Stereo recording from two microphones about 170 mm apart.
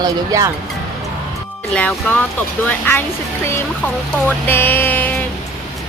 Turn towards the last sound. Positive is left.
turn(degrees=10)  # may be behind; listen again after turning